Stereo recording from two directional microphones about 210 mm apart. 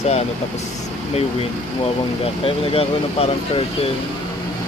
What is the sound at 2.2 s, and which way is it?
Speech, 25° left (ahead or behind).